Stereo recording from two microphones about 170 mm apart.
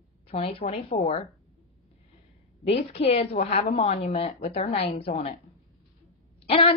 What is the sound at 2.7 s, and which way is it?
Speech, 35° left (ahead or behind).